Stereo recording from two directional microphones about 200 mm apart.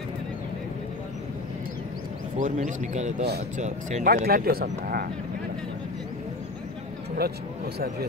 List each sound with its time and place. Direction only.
2.3 s speech: 40° right (ahead or behind)
4.1 s speech: 50° right (ahead or behind)
7.2 s speech: 50° right (ahead or behind)